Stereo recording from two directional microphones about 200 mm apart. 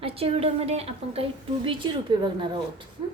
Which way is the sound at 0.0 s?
30° right (ahead or behind).